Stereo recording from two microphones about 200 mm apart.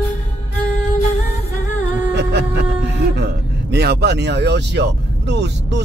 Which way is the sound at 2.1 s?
60° right (ahead or behind).